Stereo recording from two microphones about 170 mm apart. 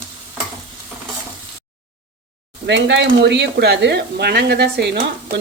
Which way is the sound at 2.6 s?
90° right.